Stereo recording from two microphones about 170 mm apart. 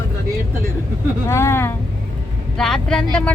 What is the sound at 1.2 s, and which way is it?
Speech, 15° left (ahead or behind).